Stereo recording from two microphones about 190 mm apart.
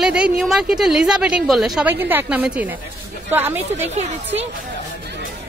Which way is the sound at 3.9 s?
35° right (ahead or behind).